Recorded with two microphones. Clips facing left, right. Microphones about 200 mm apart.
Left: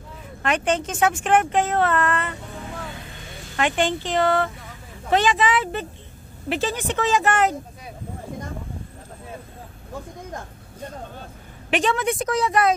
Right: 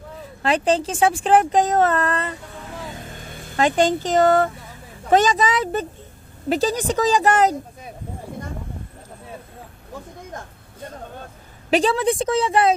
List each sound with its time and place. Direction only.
0.4 s speech: 30° right (ahead or behind)
3.0 s a sound: 45° right (ahead or behind)
5.1 s speech: 40° right (ahead or behind)
11.7 s a woman's voice: 35° right (ahead or behind)